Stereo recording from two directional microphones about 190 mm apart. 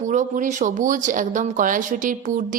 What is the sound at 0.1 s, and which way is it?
A woman's voice, 40° right (ahead or behind).